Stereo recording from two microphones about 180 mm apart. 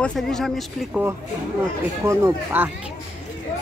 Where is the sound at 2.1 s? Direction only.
15° right (ahead or behind).